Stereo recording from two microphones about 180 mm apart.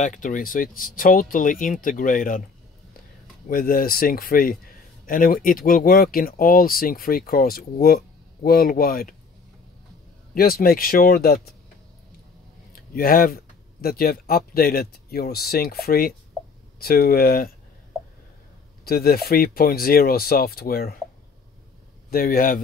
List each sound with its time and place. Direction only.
0.0 s speech: 45° left (ahead or behind)
3.4 s speech: 50° left (ahead or behind)
10.3 s speech: 55° left (ahead or behind)
12.9 s speech: 55° left (ahead or behind)
18.9 s speech: 60° left (ahead or behind)
22.1 s speech: 55° left (ahead or behind)